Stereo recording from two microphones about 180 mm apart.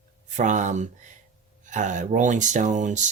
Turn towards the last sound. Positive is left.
turn(degrees=-40)  # may be behind; listen again after turning